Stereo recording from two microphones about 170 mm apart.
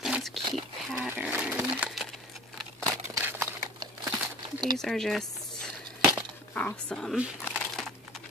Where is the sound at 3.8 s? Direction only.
25° right (ahead or behind).